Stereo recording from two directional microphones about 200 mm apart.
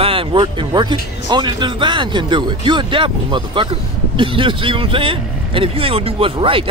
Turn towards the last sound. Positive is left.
turn(degrees=-25)  # may be behind; listen again after turning